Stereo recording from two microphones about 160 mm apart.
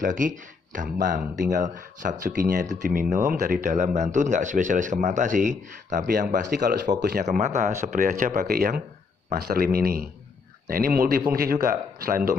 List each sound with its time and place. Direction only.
0.0 s speech: 55° right (ahead or behind)
6.3 s speech: 85° right
7.2 s speech: 45° right (ahead or behind); by 12.2 s 65° right (ahead or behind)